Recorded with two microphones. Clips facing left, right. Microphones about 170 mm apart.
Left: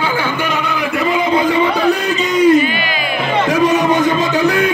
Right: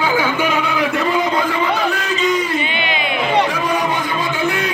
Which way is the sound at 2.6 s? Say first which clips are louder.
Left 5 dB; 20° right (ahead or behind).